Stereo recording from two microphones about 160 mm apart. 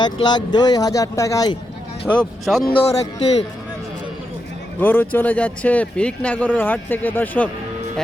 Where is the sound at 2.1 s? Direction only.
5° left (ahead or behind).